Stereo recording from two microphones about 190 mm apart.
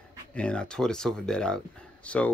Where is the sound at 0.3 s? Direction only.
5° left (ahead or behind).